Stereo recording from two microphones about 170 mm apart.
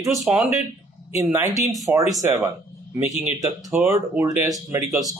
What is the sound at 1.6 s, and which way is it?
Speech, centre (ahead or behind).